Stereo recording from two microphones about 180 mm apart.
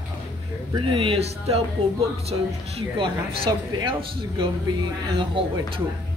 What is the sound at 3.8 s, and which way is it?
A woman's voice, 30° right (ahead or behind).